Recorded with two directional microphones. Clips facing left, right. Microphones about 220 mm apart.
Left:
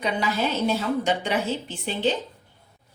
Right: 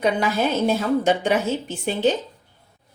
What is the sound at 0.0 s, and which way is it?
A woman's voice, 50° right (ahead or behind).